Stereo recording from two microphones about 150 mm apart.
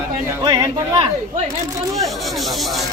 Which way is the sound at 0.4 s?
20° right (ahead or behind).